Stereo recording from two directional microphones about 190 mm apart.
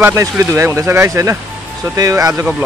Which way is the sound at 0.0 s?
15° right (ahead or behind).